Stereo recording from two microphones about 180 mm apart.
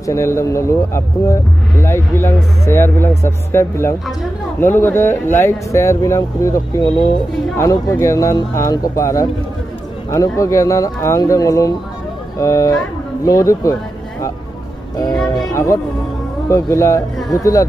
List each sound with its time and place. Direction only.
0.0 s speech: 15° left (ahead or behind)
15.5 s speech: 15° left (ahead or behind)